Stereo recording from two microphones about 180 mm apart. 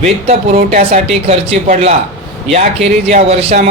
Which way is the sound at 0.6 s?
45° right (ahead or behind).